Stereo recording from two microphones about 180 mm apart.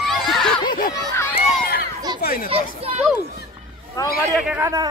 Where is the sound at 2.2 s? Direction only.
60° left (ahead or behind).